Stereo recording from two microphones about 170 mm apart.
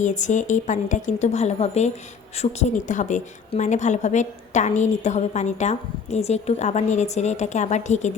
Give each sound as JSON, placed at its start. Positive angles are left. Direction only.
{"t": 0.0, "sound": "a woman's voice", "side_deg": 45}